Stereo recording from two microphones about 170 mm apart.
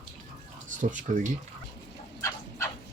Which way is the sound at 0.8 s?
50° right (ahead or behind).